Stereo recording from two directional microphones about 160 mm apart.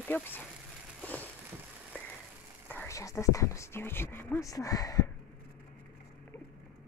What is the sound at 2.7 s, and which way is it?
Speech, 15° left (ahead or behind).